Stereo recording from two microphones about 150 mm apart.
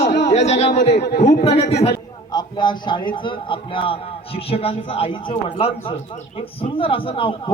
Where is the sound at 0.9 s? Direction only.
90° left.